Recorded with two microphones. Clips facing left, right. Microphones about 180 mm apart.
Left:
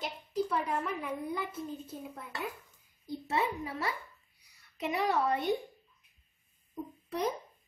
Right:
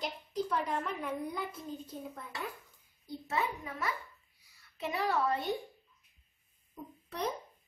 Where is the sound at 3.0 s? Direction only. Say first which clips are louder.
Left 3 dB; 30° left (ahead or behind).